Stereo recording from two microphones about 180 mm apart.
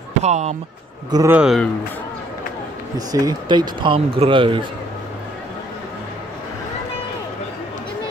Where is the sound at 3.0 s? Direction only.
20° right (ahead or behind).